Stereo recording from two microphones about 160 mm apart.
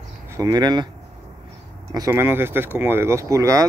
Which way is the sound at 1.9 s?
20° right (ahead or behind).